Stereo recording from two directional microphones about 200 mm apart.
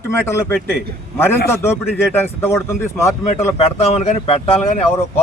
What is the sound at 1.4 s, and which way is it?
Speech, 10° left (ahead or behind).